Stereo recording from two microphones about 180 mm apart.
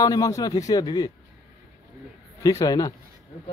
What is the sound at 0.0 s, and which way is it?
A man's voice, 20° left (ahead or behind).